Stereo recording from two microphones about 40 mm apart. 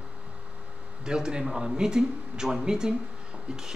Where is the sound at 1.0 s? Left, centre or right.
Centre.